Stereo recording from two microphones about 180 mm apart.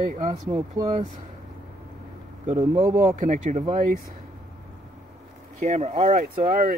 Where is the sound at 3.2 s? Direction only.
45° right (ahead or behind).